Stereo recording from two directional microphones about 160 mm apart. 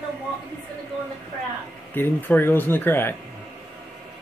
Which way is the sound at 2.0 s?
10° left (ahead or behind).